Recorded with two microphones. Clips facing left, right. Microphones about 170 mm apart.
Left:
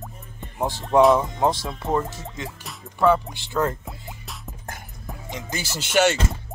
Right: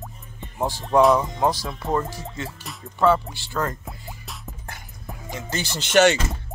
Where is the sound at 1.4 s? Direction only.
25° left (ahead or behind).